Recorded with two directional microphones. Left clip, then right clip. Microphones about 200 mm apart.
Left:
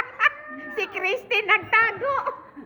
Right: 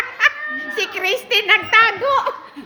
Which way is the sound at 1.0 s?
5° right (ahead or behind).